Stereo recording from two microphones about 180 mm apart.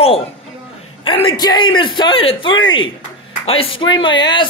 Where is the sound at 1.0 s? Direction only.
25° left (ahead or behind).